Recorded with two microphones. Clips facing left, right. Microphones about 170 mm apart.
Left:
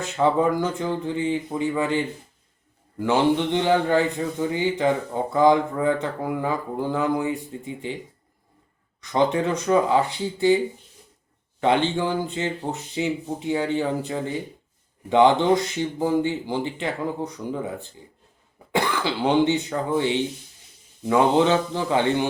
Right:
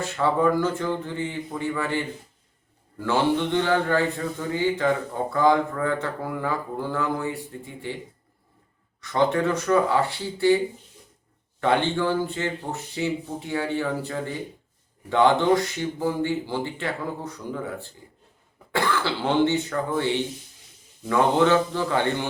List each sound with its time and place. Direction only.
0.0 s a man's voice: 20° left (ahead or behind)
3.0 s a man's voice: 15° left (ahead or behind)
9.0 s speech: 20° left (ahead or behind)
11.6 s a man's voice: 15° left (ahead or behind)